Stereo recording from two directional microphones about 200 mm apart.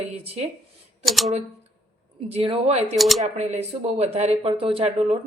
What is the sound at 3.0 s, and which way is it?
Speech, centre (ahead or behind).